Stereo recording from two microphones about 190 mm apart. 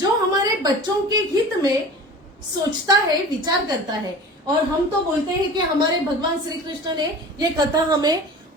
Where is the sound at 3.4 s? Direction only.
20° right (ahead or behind).